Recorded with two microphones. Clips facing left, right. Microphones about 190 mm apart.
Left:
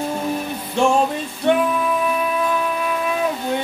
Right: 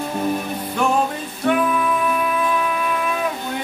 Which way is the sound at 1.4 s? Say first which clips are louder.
Left 2 dB; 25° left (ahead or behind).